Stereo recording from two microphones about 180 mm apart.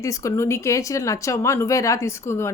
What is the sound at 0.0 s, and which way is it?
A woman's voice, 15° left (ahead or behind).